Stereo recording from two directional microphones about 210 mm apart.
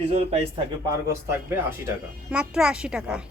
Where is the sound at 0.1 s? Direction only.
25° right (ahead or behind).